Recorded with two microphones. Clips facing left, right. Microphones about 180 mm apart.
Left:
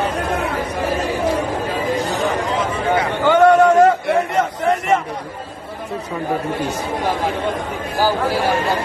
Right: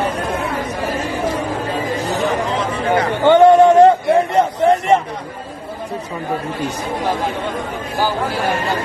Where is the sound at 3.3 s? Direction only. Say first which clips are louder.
Right 3 dB; 25° right (ahead or behind).